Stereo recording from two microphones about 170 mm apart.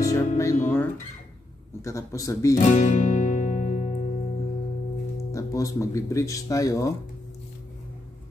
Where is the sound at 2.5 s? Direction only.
45° left (ahead or behind).